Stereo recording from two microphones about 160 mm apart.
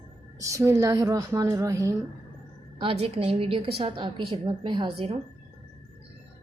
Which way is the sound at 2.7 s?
35° right (ahead or behind).